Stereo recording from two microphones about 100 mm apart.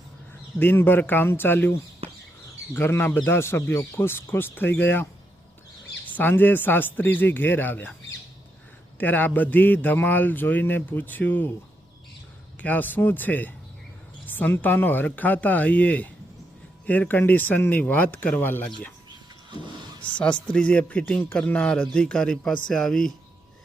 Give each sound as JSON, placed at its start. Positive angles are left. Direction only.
{"t": 0.6, "sound": "speech", "side_deg": 20}
{"t": 6.1, "sound": "speech", "side_deg": 20}
{"t": 9.0, "sound": "a man's voice", "side_deg": 15}
{"t": 12.5, "sound": "a man's voice", "side_deg": 15}
{"t": 19.5, "sound": "vehicle", "side_deg": -50}
{"t": 20.1, "sound": "a man's voice", "side_deg": 10}